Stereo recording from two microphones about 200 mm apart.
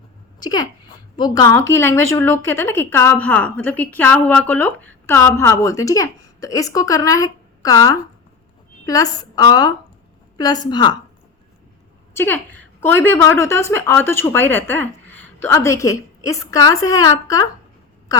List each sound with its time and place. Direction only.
0.3 s a woman's voice: 20° left (ahead or behind)
12.1 s a woman's voice: 10° left (ahead or behind)